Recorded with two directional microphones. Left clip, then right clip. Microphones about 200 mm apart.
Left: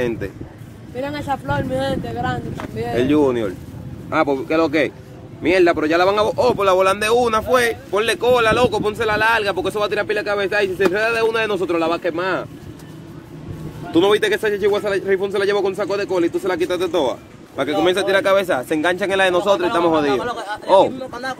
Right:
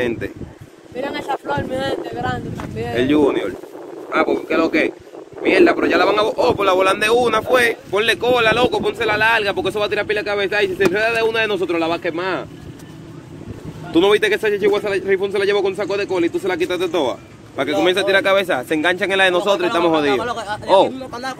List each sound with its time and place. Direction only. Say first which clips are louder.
0.9 s speech: right 1 dB; 35° left (ahead or behind)
3.0 s a man's voice: right 1 dB; centre (ahead or behind)
4.1 s speech: even; 10° left (ahead or behind)
13.9 s a man's voice: right 1 dB; 5° left (ahead or behind)
20.2 s speech: right 1 dB; 25° right (ahead or behind)